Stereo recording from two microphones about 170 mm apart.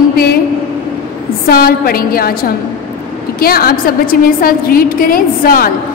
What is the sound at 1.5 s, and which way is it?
Speech, 60° left (ahead or behind).